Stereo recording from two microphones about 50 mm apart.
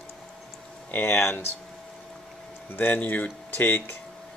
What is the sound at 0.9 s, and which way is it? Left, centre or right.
Speech, left.